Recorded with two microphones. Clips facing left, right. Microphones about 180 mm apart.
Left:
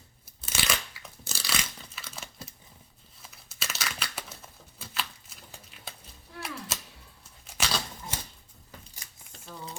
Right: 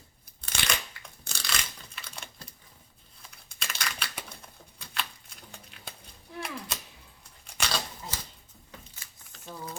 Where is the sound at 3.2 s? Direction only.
5° left (ahead or behind).